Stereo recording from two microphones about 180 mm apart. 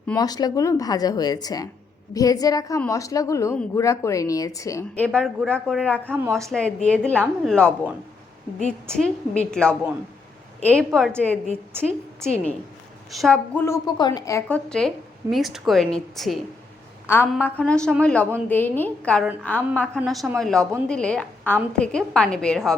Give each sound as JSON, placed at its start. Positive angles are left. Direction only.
{"t": 0.2, "sound": "a woman's voice", "side_deg": 20}
{"t": 6.1, "sound": "a woman's voice", "side_deg": -15}
{"t": 6.5, "sound": "a woman's voice", "side_deg": 5}
{"t": 12.2, "sound": "a woman's voice", "side_deg": 5}
{"t": 13.8, "sound": "a woman's voice", "side_deg": 20}
{"t": 14.4, "sound": "a woman's voice", "side_deg": 5}
{"t": 17.1, "sound": "a woman's voice", "side_deg": 15}